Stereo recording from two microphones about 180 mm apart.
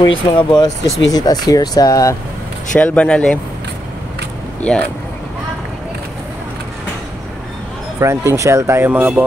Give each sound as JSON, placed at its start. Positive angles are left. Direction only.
{"t": 0.0, "sound": "speech", "side_deg": 25}
{"t": 2.7, "sound": "speech", "side_deg": 5}
{"t": 4.6, "sound": "speech", "side_deg": 5}
{"t": 8.0, "sound": "speech", "side_deg": -15}